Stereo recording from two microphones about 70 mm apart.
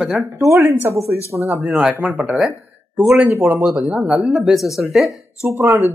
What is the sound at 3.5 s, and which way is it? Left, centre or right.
Speech, right.